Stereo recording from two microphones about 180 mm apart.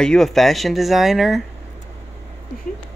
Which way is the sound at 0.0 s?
5° left (ahead or behind).